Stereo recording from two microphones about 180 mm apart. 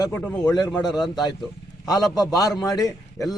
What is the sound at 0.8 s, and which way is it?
Speech, 25° left (ahead or behind).